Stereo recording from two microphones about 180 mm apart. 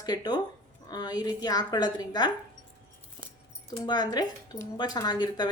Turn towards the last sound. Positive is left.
turn(degrees=25)  # may be behind; listen again after turning